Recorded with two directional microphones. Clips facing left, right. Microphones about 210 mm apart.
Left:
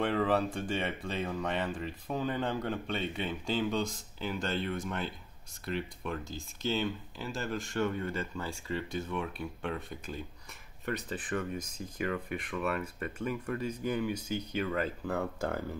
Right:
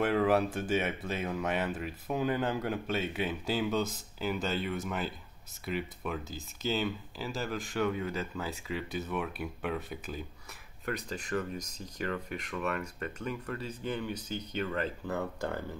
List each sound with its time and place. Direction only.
0.0 s speech: 5° right (ahead or behind)